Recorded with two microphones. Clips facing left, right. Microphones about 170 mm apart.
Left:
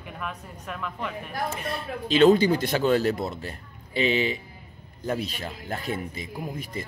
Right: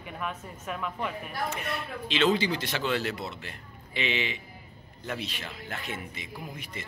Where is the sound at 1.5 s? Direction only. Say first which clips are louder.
Left 3 dB; 35° left (ahead or behind).